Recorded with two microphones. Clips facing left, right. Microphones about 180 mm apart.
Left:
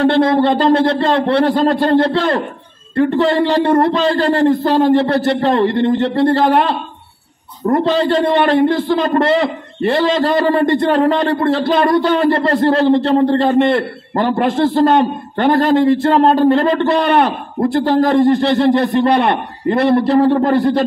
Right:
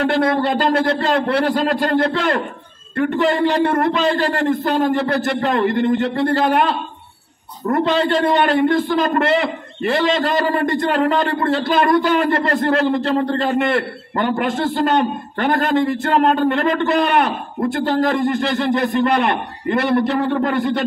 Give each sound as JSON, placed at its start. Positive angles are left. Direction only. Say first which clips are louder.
{"t": 0.0, "sound": "a man's voice", "louder": "left 5 dB", "side_deg": 30}